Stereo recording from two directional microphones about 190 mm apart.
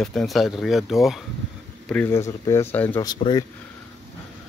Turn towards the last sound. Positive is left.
turn(degrees=20)  # may be behind; listen again after turning